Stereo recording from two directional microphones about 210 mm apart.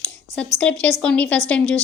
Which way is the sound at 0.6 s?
5° left (ahead or behind).